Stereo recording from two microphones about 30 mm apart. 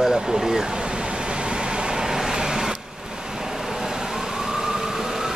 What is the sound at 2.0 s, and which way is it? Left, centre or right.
Vehicle, centre.